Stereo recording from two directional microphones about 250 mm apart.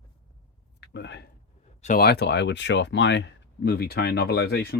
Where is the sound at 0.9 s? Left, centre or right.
Left.